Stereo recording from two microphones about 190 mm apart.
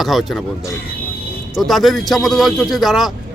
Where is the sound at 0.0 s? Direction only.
Centre (ahead or behind).